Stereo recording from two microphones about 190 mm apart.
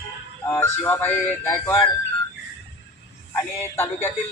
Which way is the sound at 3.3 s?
15° left (ahead or behind).